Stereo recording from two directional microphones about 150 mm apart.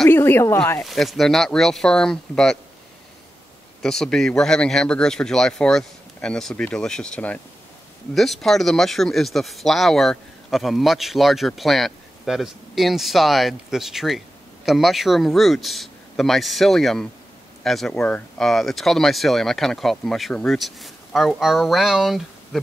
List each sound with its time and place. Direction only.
0.1 s speech: 15° left (ahead or behind)
0.8 s speech: centre (ahead or behind)
3.8 s speech: 5° left (ahead or behind)